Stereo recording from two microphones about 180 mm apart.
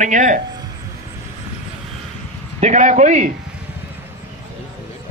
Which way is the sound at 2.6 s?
40° right (ahead or behind).